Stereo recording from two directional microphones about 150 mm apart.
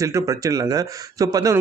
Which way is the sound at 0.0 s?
20° right (ahead or behind).